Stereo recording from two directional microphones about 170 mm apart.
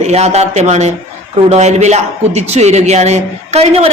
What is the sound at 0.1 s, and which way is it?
A woman's voice, 40° right (ahead or behind).